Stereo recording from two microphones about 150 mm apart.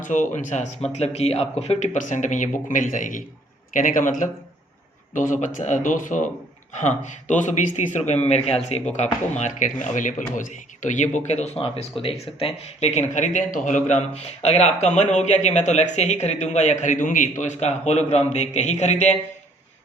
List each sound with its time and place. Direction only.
0.0 s speech: 60° left (ahead or behind)
5.1 s speech: 60° left (ahead or behind)